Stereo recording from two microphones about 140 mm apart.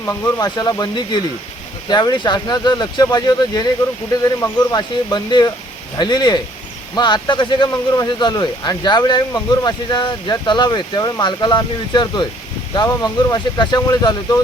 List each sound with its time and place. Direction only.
0.0 s speech: 20° left (ahead or behind)